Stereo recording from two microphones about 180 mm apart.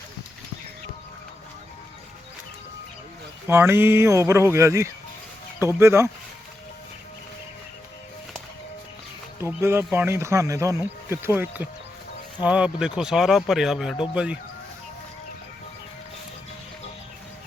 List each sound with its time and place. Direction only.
3.4 s speech: 15° right (ahead or behind)
9.4 s speech: 15° right (ahead or behind)
13.9 s speech: 25° left (ahead or behind)